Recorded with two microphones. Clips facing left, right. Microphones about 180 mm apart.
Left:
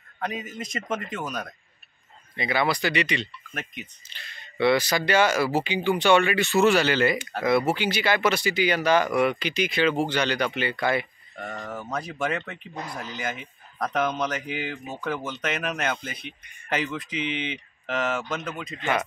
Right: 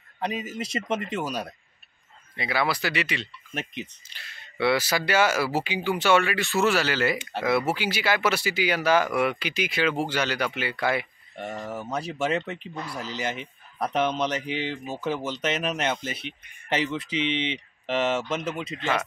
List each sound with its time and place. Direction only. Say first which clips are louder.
0.2 s speech: right 2 dB; 30° right (ahead or behind)
2.3 s speech: left 2 dB; 5° right (ahead or behind)
12.0 s speech: right 3 dB; 25° right (ahead or behind)
18.8 s speech: left 2 dB; centre (ahead or behind)